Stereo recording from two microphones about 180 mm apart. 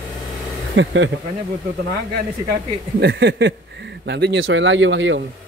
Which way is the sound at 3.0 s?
80° right.